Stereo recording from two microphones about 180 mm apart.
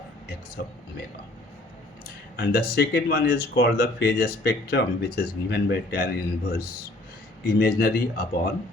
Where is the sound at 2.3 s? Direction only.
55° left (ahead or behind).